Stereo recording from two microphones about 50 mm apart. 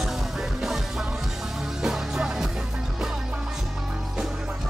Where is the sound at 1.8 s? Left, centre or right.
Centre.